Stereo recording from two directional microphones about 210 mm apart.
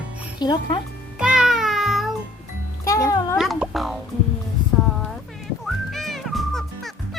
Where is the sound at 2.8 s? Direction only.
15° left (ahead or behind).